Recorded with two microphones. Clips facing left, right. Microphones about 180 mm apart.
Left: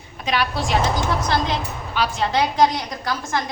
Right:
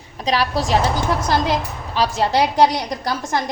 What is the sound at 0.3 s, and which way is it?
Speech, 35° right (ahead or behind).